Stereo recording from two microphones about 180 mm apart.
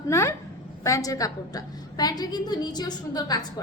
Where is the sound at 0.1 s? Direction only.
15° left (ahead or behind).